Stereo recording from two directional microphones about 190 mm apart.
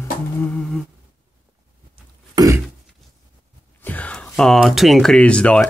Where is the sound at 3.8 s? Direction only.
10° left (ahead or behind).